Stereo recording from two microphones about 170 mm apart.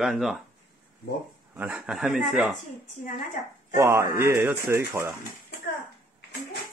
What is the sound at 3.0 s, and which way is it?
Speech, 55° left (ahead or behind).